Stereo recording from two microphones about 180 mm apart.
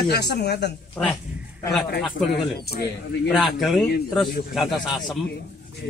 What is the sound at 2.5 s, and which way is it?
Speech, 60° left (ahead or behind).